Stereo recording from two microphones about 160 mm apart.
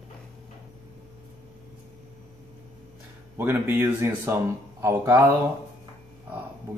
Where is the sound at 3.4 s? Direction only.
15° right (ahead or behind).